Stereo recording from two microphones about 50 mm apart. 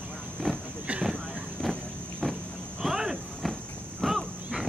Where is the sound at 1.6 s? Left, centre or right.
Centre.